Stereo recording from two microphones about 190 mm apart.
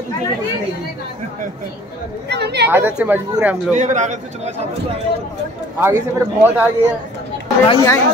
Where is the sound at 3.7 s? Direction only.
40° right (ahead or behind).